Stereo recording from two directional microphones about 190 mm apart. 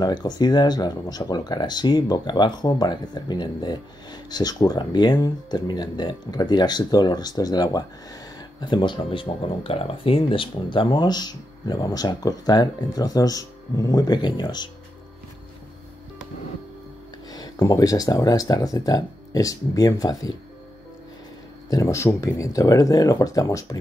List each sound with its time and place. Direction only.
0.0 s speech: 20° left (ahead or behind)
17.3 s speech: 20° left (ahead or behind)
21.6 s speech: 15° left (ahead or behind)